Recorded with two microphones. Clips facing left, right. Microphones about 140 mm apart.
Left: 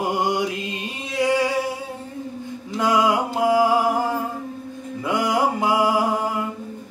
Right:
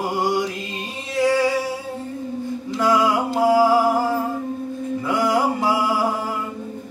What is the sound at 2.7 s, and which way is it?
Music, 20° left (ahead or behind).